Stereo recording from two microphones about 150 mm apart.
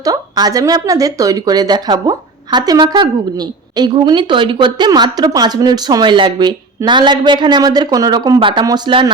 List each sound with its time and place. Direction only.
0.0 s speech: 25° right (ahead or behind)